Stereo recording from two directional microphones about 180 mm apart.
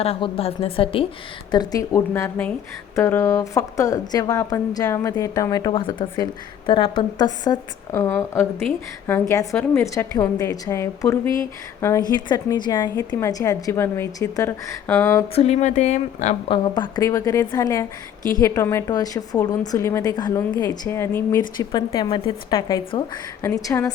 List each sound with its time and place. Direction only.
0.0 s a woman's voice: 35° left (ahead or behind); by 15.2 s 15° left (ahead or behind)
15.4 s a woman's voice: 40° left (ahead or behind)
16.5 s a woman's voice: 25° left (ahead or behind)